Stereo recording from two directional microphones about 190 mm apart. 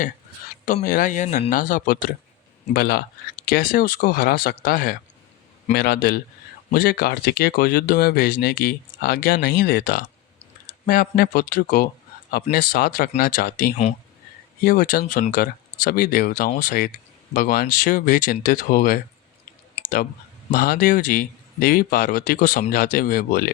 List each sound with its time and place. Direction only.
0.6 s speech: 45° left (ahead or behind)
19.7 s clicking: 45° left (ahead or behind)
20.5 s speech: 50° left (ahead or behind)